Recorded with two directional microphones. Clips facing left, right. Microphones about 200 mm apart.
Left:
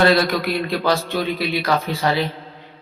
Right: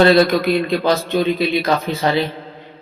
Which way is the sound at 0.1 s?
20° right (ahead or behind).